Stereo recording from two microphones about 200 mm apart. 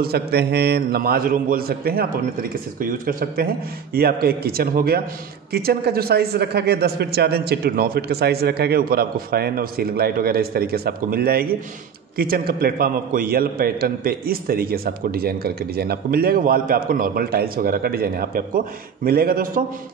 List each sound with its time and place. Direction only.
0.0 s a man's voice: 50° right (ahead or behind)